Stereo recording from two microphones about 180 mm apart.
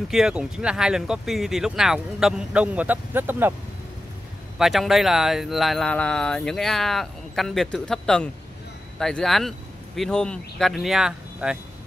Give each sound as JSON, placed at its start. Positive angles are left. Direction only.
{"t": 0.1, "sound": "speech", "side_deg": -5}
{"t": 4.6, "sound": "speech", "side_deg": 0}